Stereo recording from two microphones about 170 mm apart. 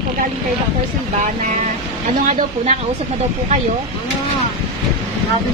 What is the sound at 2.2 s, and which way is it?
Speech, 45° right (ahead or behind).